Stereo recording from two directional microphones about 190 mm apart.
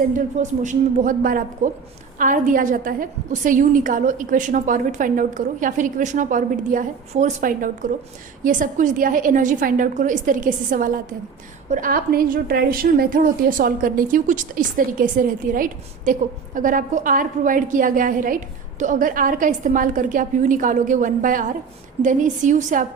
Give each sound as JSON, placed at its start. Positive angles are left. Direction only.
{"t": 0.1, "sound": "a woman's voice", "side_deg": -40}